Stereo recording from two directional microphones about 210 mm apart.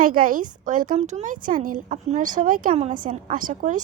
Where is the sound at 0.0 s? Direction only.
40° right (ahead or behind).